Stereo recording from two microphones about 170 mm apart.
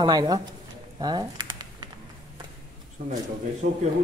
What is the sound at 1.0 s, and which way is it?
Crumpling, 25° right (ahead or behind).